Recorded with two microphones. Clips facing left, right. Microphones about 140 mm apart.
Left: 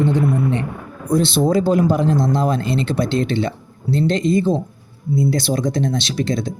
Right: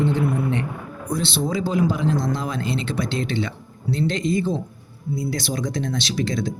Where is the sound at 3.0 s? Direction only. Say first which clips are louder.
Left 5 dB; 30° left (ahead or behind).